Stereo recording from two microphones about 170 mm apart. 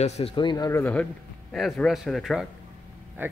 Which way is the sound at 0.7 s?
15° left (ahead or behind).